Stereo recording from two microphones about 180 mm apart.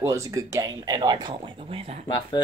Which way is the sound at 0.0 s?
15° right (ahead or behind).